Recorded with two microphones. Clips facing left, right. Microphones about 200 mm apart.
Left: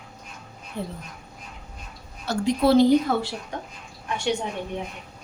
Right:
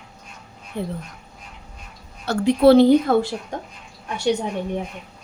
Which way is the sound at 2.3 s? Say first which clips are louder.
Right 6 dB; 60° right (ahead or behind).